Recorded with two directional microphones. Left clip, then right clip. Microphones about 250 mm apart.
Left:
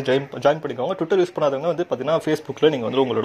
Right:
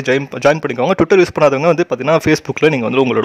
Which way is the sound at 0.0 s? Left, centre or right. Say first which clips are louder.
Right 6 dB; right.